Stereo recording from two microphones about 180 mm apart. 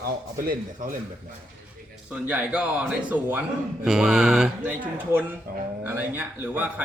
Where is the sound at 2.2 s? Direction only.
5° right (ahead or behind).